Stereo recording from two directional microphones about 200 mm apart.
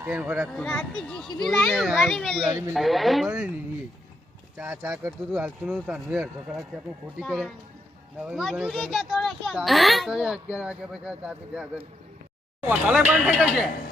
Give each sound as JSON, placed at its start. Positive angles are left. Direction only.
{"t": 0.0, "sound": "speech", "side_deg": -5}
{"t": 0.5, "sound": "speech", "side_deg": 5}
{"t": 2.4, "sound": "speech", "side_deg": -20}
{"t": 2.7, "sound": "speech", "side_deg": 0}
{"t": 4.5, "sound": "speech", "side_deg": -10}